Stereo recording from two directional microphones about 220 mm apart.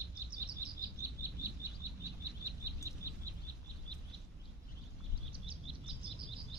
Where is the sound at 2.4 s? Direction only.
15° right (ahead or behind).